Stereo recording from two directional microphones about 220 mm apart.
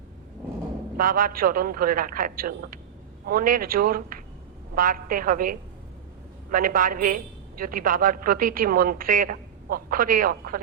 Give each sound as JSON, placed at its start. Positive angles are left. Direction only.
{"t": 0.9, "sound": "a woman's voice", "side_deg": -40}